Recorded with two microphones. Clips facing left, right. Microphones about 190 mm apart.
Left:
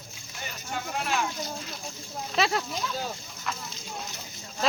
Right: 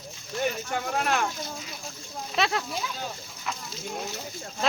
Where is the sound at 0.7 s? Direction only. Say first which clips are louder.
Right 3 dB; 60° right (ahead or behind).